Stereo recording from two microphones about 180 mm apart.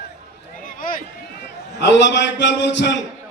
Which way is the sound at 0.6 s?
50° left (ahead or behind).